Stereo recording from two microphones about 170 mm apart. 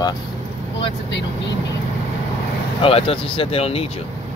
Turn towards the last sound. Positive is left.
turn(degrees=35)  # may be behind; listen again after turning